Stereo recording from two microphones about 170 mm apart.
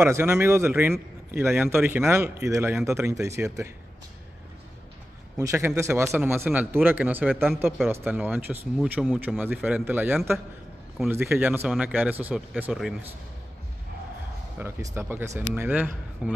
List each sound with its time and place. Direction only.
0.0 s speech: 15° right (ahead or behind)
5.4 s speech: 15° right (ahead or behind)
14.6 s speech: 15° right (ahead or behind)